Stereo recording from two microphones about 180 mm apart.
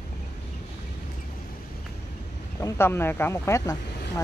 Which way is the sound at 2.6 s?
15° left (ahead or behind).